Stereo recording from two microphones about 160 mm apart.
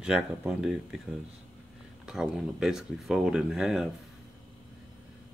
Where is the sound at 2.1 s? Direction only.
5° right (ahead or behind).